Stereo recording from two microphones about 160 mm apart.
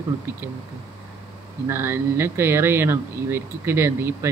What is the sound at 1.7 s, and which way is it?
Speech, 15° right (ahead or behind).